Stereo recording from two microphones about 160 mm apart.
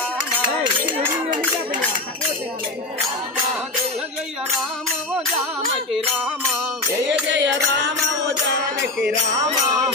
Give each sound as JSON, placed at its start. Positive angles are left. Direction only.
{"t": 7.1, "sound": "music", "side_deg": -90}
{"t": 9.4, "sound": "jingle bell", "side_deg": -25}